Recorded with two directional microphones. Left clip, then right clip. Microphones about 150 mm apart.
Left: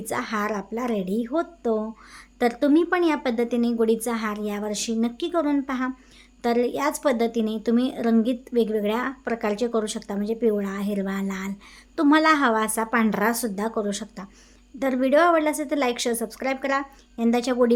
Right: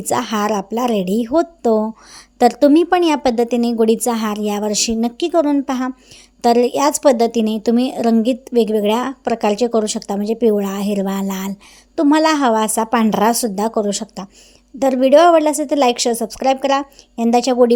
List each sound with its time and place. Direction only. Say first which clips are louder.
0.0 s speech: right 8 dB; 45° right (ahead or behind)
11.9 s speech: right 5 dB; 30° right (ahead or behind)